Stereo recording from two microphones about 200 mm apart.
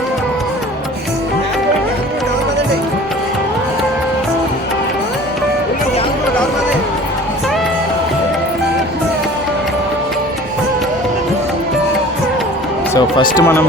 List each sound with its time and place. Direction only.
12.9 s run: 20° left (ahead or behind)
13.3 s speech: 10° left (ahead or behind)